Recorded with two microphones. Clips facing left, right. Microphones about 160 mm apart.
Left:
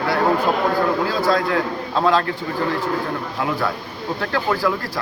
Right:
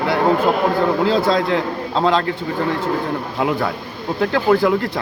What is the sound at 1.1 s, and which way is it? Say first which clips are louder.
Speech: right 3 dB; 25° right (ahead or behind).